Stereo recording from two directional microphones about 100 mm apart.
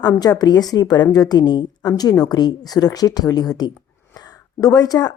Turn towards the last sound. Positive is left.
turn(degrees=40)  # may be behind; listen again after turning